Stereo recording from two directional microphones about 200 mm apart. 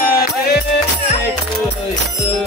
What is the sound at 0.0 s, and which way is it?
Music, 50° left (ahead or behind).